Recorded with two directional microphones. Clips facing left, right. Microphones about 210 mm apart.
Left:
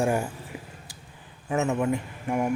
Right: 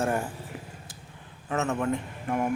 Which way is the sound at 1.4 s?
15° left (ahead or behind).